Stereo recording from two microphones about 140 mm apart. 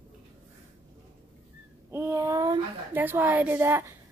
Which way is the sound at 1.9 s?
20° right (ahead or behind).